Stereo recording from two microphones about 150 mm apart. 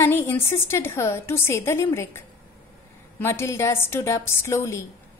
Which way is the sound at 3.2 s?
15° left (ahead or behind).